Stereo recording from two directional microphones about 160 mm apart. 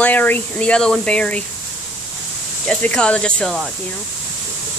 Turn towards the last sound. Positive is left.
turn(degrees=5)  # may be behind; listen again after turning